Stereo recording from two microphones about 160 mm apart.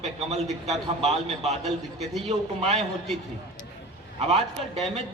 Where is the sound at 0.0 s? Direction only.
45° right (ahead or behind).